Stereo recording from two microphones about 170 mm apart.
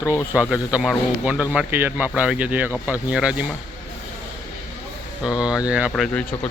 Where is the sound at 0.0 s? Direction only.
15° left (ahead or behind).